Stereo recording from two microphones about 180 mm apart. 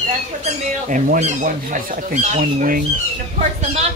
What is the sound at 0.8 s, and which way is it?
Speech, 45° right (ahead or behind).